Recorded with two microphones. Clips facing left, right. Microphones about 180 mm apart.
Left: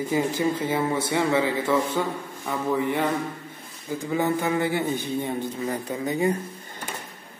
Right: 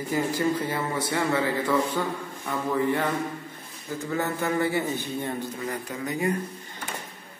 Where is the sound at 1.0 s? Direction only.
20° left (ahead or behind).